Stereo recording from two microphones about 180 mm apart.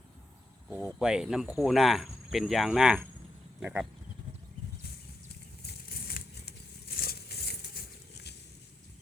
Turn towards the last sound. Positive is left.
turn(degrees=55)  # may be behind; listen again after turning